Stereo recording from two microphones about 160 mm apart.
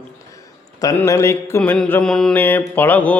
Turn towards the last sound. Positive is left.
turn(degrees=10)  # may be behind; listen again after turning